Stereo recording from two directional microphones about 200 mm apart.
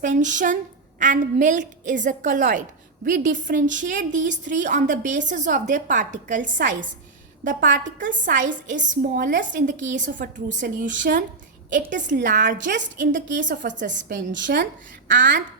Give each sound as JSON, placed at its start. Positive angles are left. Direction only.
{"t": 0.0, "sound": "a woman's voice", "side_deg": -40}
{"t": 14.0, "sound": "a woman's voice", "side_deg": -65}